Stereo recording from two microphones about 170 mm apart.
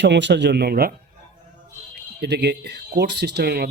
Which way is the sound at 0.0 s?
90° right.